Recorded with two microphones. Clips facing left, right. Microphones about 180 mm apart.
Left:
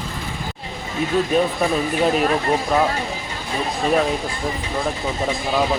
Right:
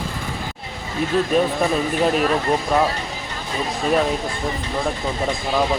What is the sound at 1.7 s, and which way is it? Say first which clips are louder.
Speech: even; centre (ahead or behind).